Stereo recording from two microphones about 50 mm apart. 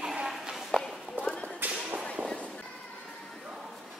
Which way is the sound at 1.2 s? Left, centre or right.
Left.